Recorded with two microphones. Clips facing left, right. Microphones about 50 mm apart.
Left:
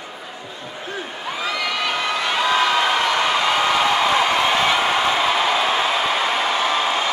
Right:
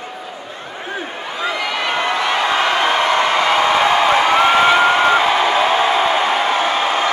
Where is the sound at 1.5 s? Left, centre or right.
Right.